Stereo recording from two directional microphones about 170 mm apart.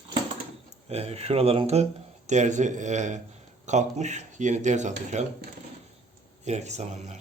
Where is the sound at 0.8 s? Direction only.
40° right (ahead or behind).